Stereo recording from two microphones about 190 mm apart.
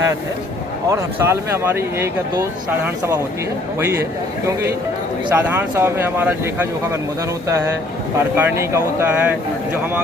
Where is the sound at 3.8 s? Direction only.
15° right (ahead or behind).